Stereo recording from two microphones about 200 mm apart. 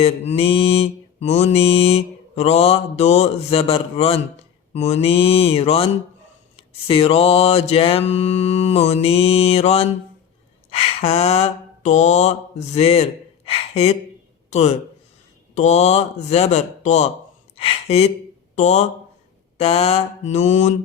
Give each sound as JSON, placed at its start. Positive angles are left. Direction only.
{"t": 0.0, "sound": "mantra", "side_deg": 30}
{"t": 15.5, "sound": "speech", "side_deg": 35}